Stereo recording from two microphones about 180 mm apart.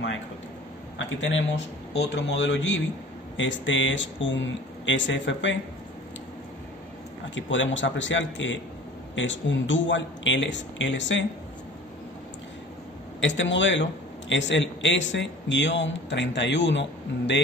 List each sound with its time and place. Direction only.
0.9 s a man's voice: 90° left
7.3 s a man's voice: 90° left
13.2 s a man's voice: 90° left